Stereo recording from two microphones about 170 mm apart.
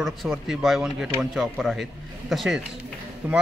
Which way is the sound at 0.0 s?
Centre (ahead or behind).